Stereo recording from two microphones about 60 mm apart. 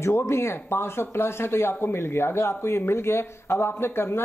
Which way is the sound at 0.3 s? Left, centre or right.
Left.